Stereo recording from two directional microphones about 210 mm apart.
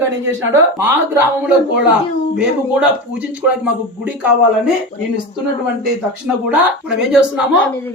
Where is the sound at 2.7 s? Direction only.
5° right (ahead or behind).